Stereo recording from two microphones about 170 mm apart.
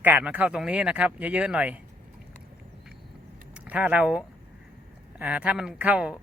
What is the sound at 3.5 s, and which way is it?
A man's voice, 5° right (ahead or behind).